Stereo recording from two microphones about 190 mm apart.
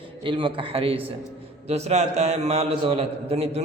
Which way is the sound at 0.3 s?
25° right (ahead or behind).